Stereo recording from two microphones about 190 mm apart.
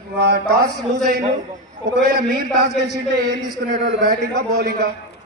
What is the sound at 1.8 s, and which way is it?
Speech, 60° right (ahead or behind).